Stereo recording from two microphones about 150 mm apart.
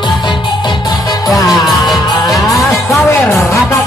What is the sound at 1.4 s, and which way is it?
Music, centre (ahead or behind).